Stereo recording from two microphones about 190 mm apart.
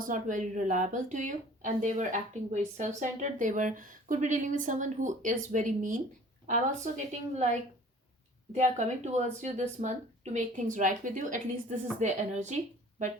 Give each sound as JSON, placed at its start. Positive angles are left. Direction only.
{"t": 0.0, "sound": "speech", "side_deg": -40}
{"t": 8.5, "sound": "a woman's voice", "side_deg": -40}